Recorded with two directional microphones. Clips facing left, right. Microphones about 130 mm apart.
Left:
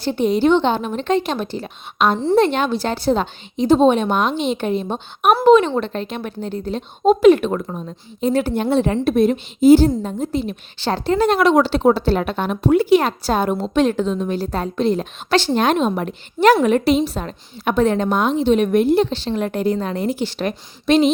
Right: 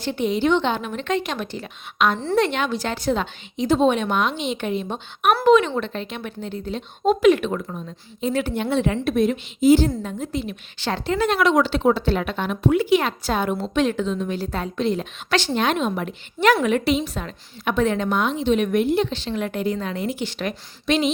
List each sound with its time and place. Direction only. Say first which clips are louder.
0.0 s a woman's voice: left 5 dB; 35° left (ahead or behind)